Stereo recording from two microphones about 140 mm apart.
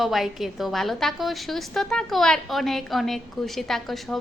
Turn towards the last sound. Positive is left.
turn(degrees=0)  # may be behind; listen again after turning